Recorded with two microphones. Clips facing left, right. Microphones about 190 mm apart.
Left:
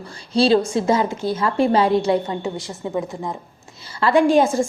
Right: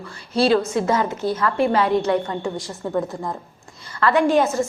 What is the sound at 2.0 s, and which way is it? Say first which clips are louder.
A woman's voice: left 1 dB; 20° left (ahead or behind).